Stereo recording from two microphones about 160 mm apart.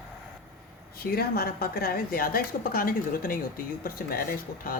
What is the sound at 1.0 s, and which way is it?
A woman's voice, 70° left (ahead or behind).